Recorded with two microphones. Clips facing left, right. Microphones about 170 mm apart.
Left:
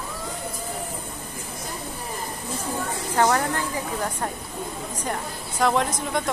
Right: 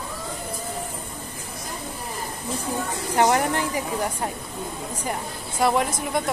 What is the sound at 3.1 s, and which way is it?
A woman's voice, 20° right (ahead or behind).